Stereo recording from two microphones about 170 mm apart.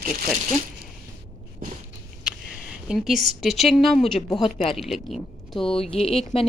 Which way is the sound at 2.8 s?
Centre (ahead or behind).